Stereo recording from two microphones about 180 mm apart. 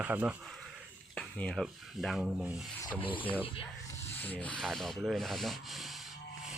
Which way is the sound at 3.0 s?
30° left (ahead or behind).